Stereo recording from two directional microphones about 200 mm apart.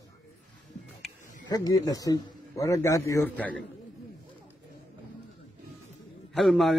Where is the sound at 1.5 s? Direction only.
20° left (ahead or behind).